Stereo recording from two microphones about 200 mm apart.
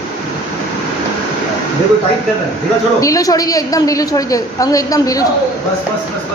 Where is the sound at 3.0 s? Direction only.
15° left (ahead or behind).